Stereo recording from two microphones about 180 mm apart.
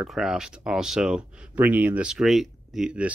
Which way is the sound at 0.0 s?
5° right (ahead or behind).